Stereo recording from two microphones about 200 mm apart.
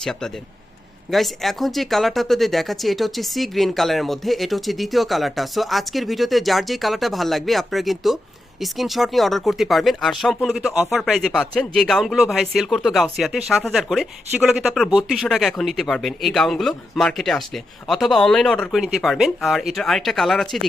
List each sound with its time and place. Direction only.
0.0 s speech: 5° left (ahead or behind)